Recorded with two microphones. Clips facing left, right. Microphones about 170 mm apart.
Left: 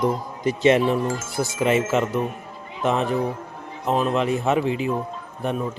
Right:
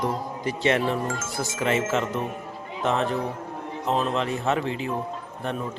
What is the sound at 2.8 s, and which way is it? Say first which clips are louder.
Speech: left 3 dB; 15° left (ahead or behind).